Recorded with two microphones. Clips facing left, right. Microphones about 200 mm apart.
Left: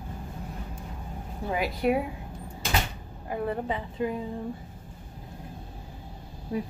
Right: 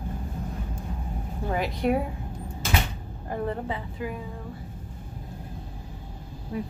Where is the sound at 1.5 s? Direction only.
5° left (ahead or behind).